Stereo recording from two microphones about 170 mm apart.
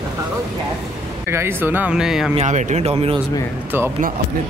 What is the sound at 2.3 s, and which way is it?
Speech, 45° right (ahead or behind).